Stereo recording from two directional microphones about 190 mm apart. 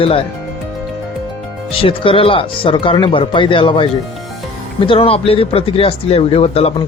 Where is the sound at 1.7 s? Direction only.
30° left (ahead or behind).